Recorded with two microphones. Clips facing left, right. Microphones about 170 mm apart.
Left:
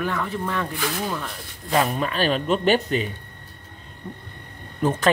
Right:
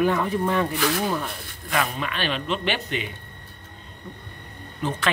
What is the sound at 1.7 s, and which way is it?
Speech, 35° left (ahead or behind).